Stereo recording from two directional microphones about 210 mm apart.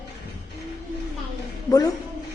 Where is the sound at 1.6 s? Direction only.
15° left (ahead or behind).